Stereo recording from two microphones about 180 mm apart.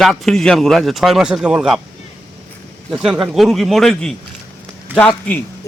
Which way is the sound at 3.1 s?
Centre (ahead or behind).